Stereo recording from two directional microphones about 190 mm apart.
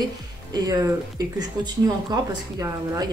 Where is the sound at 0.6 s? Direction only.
15° right (ahead or behind).